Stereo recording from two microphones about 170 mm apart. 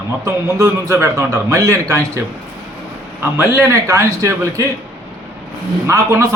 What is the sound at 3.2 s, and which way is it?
A man's voice, 15° right (ahead or behind).